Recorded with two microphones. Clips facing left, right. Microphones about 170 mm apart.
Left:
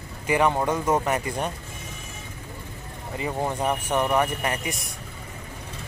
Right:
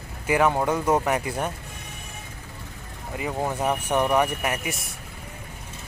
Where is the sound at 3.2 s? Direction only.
5° right (ahead or behind).